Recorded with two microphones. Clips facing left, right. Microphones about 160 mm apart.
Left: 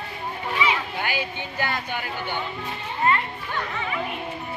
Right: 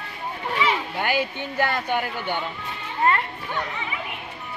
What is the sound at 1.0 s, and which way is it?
Speech, 55° right (ahead or behind).